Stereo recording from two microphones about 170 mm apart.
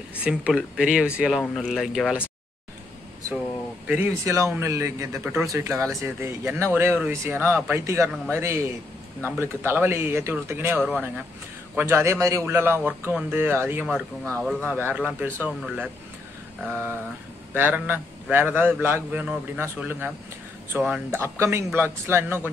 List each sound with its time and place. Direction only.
0.2 s speech: 5° right (ahead or behind)
3.8 s a man's voice: 10° right (ahead or behind)